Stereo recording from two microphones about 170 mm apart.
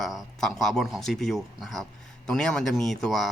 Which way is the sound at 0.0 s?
Centre (ahead or behind).